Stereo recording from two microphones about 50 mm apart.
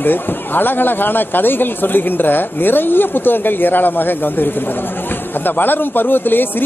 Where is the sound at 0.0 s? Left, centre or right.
Left.